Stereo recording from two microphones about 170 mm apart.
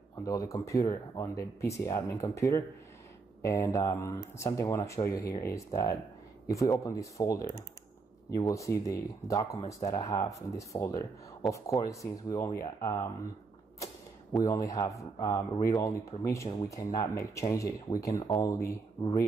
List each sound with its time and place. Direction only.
0.2 s speech: 20° left (ahead or behind)
14.4 s speech: 20° left (ahead or behind)